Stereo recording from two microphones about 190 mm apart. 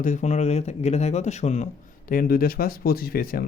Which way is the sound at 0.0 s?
40° left (ahead or behind).